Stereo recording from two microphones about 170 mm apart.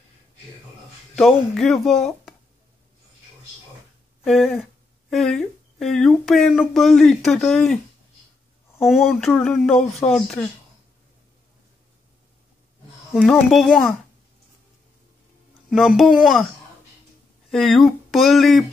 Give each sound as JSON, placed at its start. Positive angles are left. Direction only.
{"t": 1.1, "sound": "speech", "side_deg": 0}
{"t": 4.2, "sound": "speech", "side_deg": 0}
{"t": 8.8, "sound": "speech", "side_deg": 0}
{"t": 13.5, "sound": "speech", "side_deg": 0}
{"t": 15.7, "sound": "speech", "side_deg": 0}
{"t": 17.5, "sound": "speech", "side_deg": 0}